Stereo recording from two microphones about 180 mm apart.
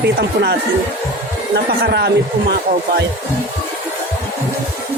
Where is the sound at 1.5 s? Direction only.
65° right (ahead or behind).